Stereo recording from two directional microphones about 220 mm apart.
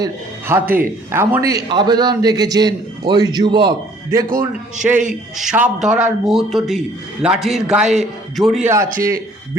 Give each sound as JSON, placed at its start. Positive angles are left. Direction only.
{"t": 0.0, "sound": "a man's voice", "side_deg": -10}
{"t": 4.8, "sound": "a man's voice", "side_deg": -5}